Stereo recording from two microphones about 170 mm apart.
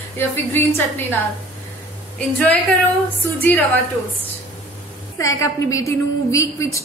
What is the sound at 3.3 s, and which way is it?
Speech, 10° left (ahead or behind).